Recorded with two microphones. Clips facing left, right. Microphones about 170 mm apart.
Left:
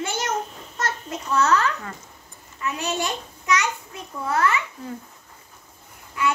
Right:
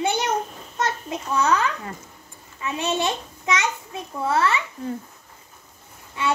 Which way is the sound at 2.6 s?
25° right (ahead or behind).